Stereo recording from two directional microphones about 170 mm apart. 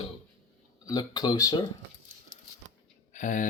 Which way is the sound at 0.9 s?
25° left (ahead or behind).